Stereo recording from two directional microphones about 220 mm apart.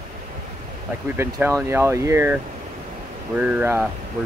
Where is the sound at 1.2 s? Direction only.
10° right (ahead or behind).